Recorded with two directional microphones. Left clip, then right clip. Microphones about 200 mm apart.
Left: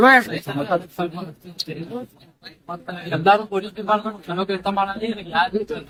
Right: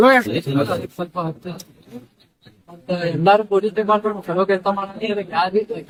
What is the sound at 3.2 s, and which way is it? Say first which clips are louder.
Speech: right 2 dB; centre (ahead or behind).